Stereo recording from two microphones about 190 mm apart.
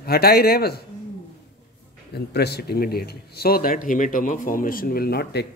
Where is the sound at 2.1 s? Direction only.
60° left (ahead or behind).